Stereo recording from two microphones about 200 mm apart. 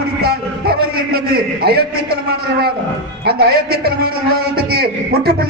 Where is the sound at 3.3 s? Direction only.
50° right (ahead or behind).